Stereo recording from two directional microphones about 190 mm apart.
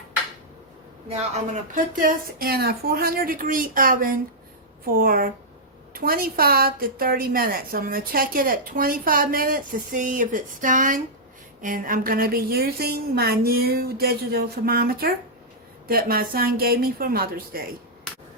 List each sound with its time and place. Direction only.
1.7 s a woman's voice: 45° right (ahead or behind)